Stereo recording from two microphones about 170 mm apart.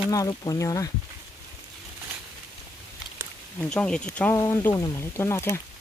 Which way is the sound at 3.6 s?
5° left (ahead or behind).